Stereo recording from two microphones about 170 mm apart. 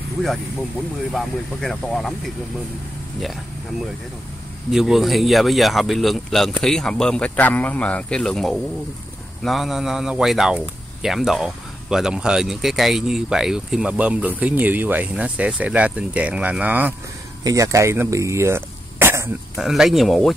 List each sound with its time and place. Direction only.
1.1 s speech: centre (ahead or behind)
4.6 s speech: 5° right (ahead or behind)
19.5 s speech: centre (ahead or behind)